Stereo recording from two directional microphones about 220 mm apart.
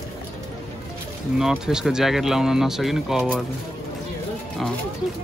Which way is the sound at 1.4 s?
Centre (ahead or behind).